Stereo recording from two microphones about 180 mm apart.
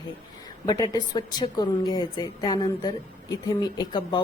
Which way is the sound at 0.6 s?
20° left (ahead or behind).